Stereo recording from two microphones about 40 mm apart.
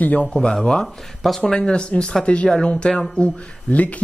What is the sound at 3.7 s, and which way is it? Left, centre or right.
Speech, left.